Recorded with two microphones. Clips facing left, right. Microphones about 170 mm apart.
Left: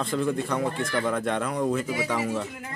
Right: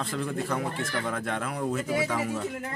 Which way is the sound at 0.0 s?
5° right (ahead or behind).